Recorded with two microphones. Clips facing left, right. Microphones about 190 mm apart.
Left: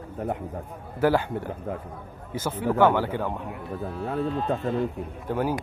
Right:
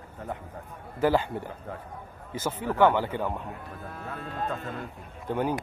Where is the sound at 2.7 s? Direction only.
10° left (ahead or behind).